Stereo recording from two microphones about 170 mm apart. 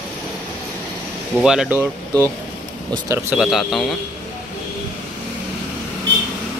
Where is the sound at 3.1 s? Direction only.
15° right (ahead or behind).